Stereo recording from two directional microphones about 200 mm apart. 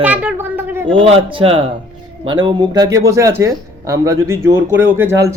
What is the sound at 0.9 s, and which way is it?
A child's voice, 25° right (ahead or behind).